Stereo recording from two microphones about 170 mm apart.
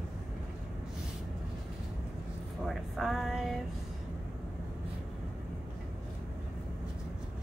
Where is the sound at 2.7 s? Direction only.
Centre (ahead or behind).